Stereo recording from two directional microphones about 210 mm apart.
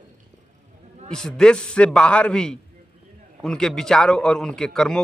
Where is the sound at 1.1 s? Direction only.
5° left (ahead or behind).